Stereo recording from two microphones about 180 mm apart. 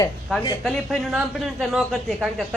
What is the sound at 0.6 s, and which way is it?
A man's voice, 5° left (ahead or behind).